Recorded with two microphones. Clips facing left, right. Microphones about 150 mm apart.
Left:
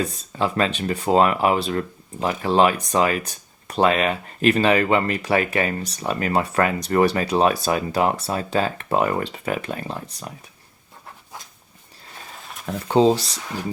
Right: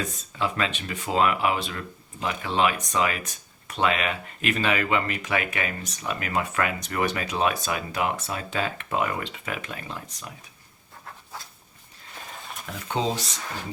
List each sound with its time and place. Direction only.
0.0 s speech: 35° left (ahead or behind)
12.9 s speech: 35° left (ahead or behind)